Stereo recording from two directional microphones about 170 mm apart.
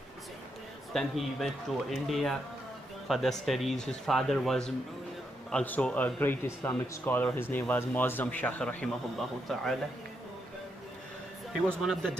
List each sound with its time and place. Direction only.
0.9 s speech: centre (ahead or behind)
11.8 s speech: centre (ahead or behind)